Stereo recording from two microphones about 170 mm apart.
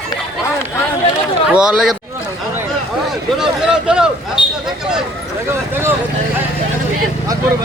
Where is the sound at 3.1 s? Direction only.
5° right (ahead or behind).